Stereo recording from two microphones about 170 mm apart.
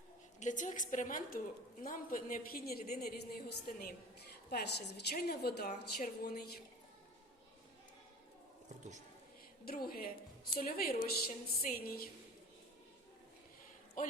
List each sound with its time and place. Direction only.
0.3 s a woman's voice: 45° left (ahead or behind)
4.4 s a woman's voice: 75° left (ahead or behind)
9.6 s a woman's voice: 60° left (ahead or behind)
14.0 s a man's voice: 50° left (ahead or behind)